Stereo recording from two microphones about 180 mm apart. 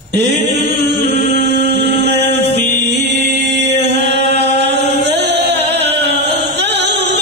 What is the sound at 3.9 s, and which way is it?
Chant, 70° right (ahead or behind).